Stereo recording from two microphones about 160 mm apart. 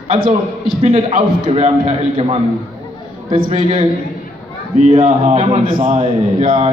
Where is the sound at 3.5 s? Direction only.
45° right (ahead or behind).